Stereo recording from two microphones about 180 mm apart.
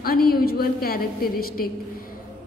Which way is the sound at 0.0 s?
55° left (ahead or behind).